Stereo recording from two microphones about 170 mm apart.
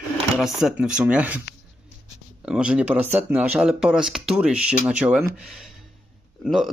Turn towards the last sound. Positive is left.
turn(degrees=0)  # may be behind; listen again after turning